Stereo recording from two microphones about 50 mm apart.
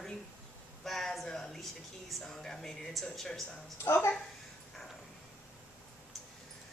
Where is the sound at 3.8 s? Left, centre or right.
Left.